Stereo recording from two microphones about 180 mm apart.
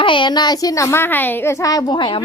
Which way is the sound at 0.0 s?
25° left (ahead or behind).